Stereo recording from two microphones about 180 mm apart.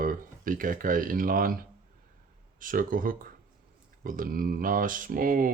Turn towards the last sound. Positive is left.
turn(degrees=-50)  # may be behind; listen again after turning